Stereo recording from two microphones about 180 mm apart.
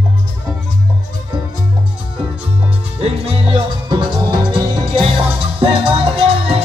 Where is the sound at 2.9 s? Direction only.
35° right (ahead or behind).